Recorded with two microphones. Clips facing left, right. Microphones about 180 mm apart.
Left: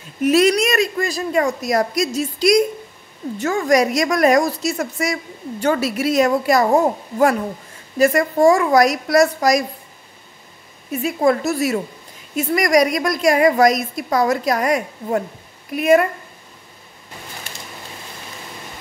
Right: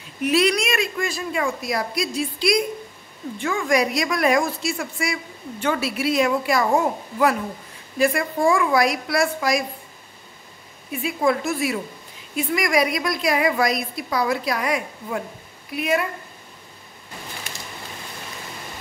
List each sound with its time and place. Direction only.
0.2 s a woman's voice: 45° left (ahead or behind)
10.9 s a woman's voice: 40° left (ahead or behind)